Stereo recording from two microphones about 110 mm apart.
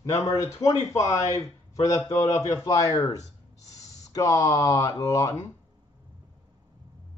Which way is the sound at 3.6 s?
30° left (ahead or behind).